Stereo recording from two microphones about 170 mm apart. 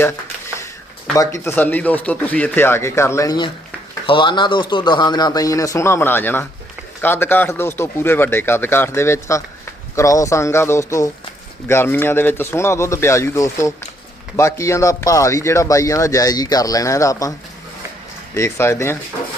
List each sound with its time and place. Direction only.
1.1 s speech: 20° left (ahead or behind)
18.3 s speech: 15° left (ahead or behind)